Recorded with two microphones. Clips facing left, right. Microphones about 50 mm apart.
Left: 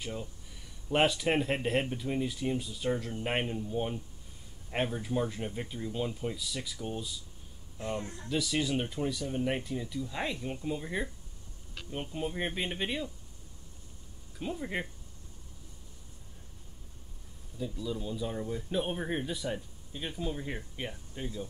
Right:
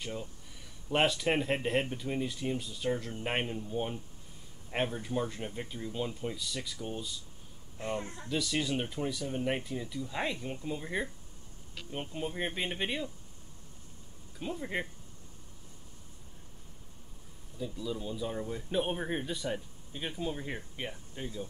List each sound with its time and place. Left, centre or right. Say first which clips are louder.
0.0 s speech: even; centre
8.3 s speech: left 1 dB; centre
14.4 s speech: even; centre
17.6 s speech: left 1 dB; centre